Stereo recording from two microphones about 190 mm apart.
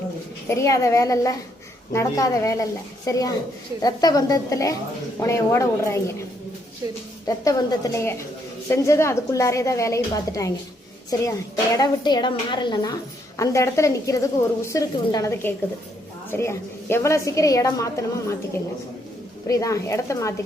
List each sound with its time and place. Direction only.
0.4 s a woman's voice: 15° left (ahead or behind)
7.3 s a woman's voice: 20° left (ahead or behind)
11.8 s a woman's voice: 20° left (ahead or behind)
19.5 s a woman's voice: 15° left (ahead or behind)